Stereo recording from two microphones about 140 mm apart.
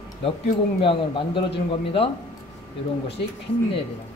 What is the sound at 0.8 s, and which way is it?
Speech, 40° left (ahead or behind).